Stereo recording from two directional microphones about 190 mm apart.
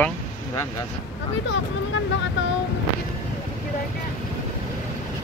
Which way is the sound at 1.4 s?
80° left.